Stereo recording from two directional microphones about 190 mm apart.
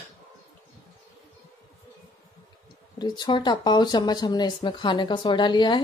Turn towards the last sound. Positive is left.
turn(degrees=25)  # may be behind; listen again after turning